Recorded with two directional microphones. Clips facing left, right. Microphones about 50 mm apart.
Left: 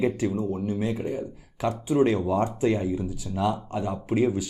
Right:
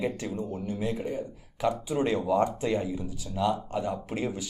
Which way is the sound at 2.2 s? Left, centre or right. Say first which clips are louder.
Even; left.